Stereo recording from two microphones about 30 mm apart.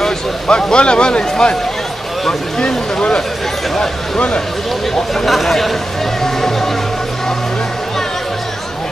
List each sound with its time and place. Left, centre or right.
0.5 s speech: left
2.6 s speech: left
5.1 s speech: centre
6.2 s music: centre